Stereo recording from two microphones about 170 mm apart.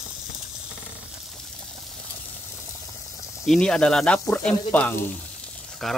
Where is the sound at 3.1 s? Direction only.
20° left (ahead or behind).